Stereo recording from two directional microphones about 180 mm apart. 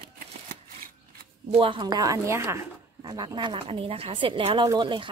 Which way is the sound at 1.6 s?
25° right (ahead or behind).